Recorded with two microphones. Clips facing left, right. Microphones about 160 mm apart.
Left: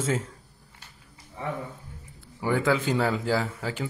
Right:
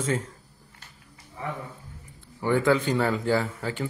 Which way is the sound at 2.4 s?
5° left (ahead or behind).